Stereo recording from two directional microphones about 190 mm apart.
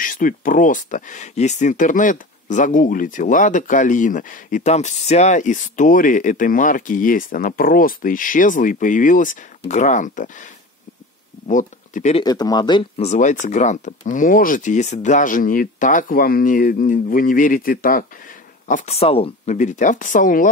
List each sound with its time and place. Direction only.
0.0 s speech: 45° left (ahead or behind)
11.4 s speech: 40° left (ahead or behind)
12.2 s speech: 20° left (ahead or behind); by 18.0 s 50° left (ahead or behind)
18.7 s speech: 35° left (ahead or behind)